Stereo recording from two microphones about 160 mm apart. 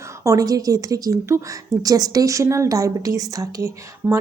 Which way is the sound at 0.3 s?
20° right (ahead or behind).